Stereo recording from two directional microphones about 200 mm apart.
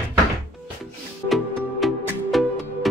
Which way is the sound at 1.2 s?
Centre (ahead or behind).